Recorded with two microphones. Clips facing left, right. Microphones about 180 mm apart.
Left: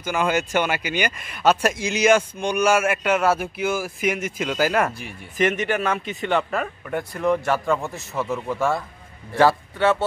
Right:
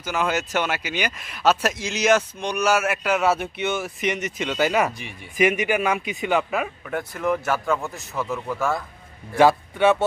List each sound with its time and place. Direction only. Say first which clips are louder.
0.0 s speech: left 2 dB; centre (ahead or behind)
5.4 s speech: right 1 dB; 10° right (ahead or behind)
9.4 s speech: right 1 dB; 15° right (ahead or behind)